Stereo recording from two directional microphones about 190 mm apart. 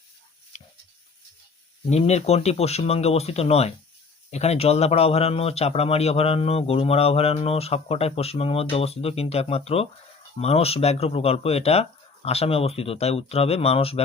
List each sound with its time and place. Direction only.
1.9 s speech: 35° left (ahead or behind)